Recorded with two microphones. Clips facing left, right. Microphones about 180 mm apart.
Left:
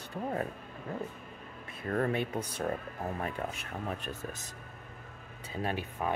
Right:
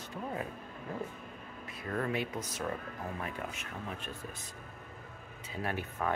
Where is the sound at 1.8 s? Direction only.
40° left (ahead or behind).